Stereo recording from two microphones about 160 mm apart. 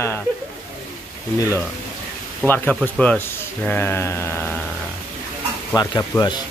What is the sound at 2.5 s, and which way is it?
Speech, 15° left (ahead or behind).